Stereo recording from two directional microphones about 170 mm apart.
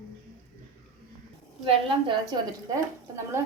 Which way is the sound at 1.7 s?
30° right (ahead or behind).